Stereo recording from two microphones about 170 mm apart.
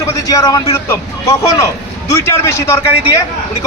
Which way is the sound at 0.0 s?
20° left (ahead or behind).